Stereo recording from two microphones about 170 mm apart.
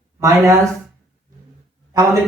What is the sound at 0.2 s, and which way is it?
Speech, 20° right (ahead or behind).